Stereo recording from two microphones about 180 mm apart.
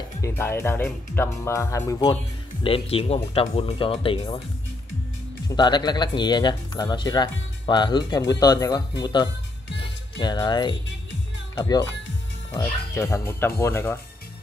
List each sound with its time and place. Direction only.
0.2 s speech: 15° left (ahead or behind)
2.6 s speech: 30° left (ahead or behind)
5.5 s speech: 25° left (ahead or behind)
10.9 s music: 90° left
11.5 s speech: 20° left (ahead or behind)